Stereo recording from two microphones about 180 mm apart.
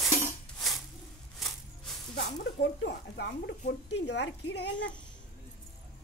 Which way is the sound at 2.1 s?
85° left.